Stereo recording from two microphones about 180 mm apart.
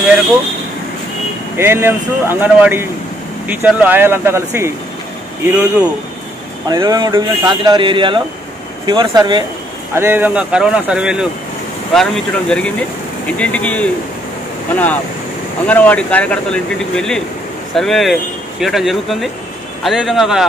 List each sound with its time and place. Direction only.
1.6 s speech: 15° right (ahead or behind)
6.7 s speech: 20° right (ahead or behind); by 13.8 s 10° left (ahead or behind)
15.6 s speech: 10° left (ahead or behind)